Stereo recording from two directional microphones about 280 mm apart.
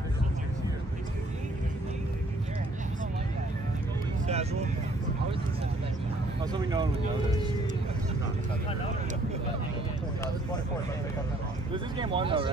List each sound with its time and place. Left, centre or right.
6.5 s speech: centre
11.7 s speech: centre